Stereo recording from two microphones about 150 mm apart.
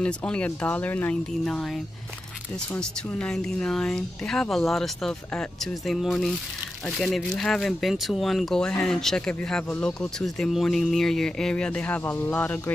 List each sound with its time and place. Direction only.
0.0 s speech: 10° left (ahead or behind)